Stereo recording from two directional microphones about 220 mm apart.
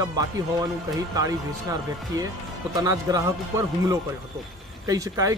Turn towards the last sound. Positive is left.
turn(degrees=-15)  # may be behind; listen again after turning